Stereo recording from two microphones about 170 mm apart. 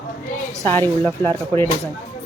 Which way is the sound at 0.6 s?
10° left (ahead or behind).